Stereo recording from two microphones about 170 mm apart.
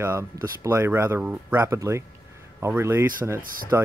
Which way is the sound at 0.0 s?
15° right (ahead or behind).